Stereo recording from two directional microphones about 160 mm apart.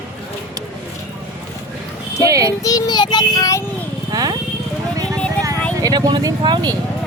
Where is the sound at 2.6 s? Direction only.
25° left (ahead or behind).